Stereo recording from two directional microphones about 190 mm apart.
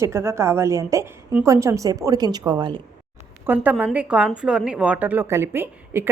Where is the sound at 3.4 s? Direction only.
10° right (ahead or behind).